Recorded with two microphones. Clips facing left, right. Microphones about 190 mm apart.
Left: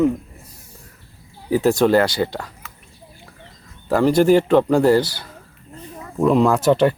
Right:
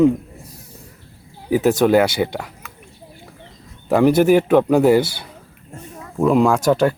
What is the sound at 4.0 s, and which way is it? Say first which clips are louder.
Speech: right 1 dB; 10° right (ahead or behind).